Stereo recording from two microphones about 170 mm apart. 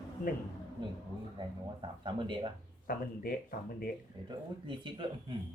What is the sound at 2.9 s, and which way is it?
Speech, 60° left (ahead or behind).